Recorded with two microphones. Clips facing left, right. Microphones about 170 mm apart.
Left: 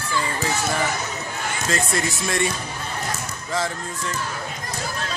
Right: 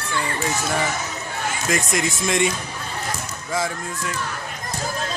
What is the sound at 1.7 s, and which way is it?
Speech, 15° right (ahead or behind).